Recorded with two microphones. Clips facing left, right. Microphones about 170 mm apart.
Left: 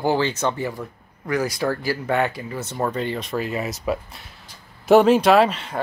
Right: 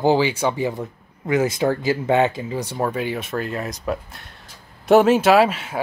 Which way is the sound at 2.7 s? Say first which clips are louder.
Even; 5° right (ahead or behind).